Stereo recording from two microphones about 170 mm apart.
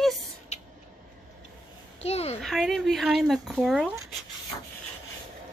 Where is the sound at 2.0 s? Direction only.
35° left (ahead or behind).